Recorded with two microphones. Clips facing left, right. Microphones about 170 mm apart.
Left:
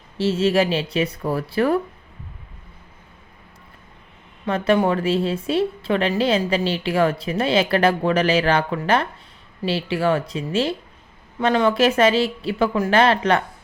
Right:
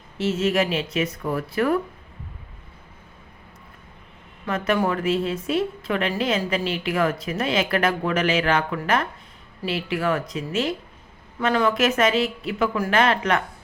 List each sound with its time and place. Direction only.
0.2 s a woman's voice: 30° left (ahead or behind)
4.4 s a woman's voice: 30° left (ahead or behind)